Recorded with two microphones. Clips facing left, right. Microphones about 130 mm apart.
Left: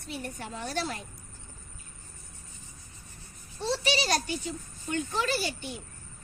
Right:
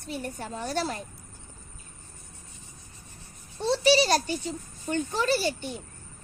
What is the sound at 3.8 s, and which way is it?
Child singing, 35° right (ahead or behind).